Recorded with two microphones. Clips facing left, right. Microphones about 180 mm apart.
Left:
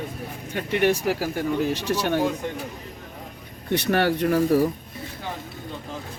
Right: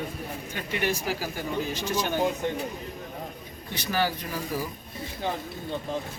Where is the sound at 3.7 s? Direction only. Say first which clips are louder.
Left 7 dB; 65° left (ahead or behind).